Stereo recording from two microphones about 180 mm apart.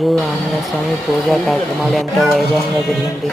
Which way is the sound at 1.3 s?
Centre (ahead or behind).